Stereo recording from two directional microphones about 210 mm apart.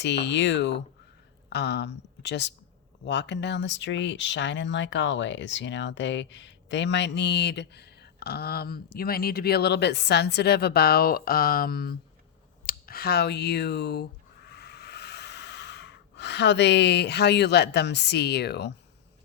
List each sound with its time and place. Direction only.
0.0 s speech: 55° left (ahead or behind)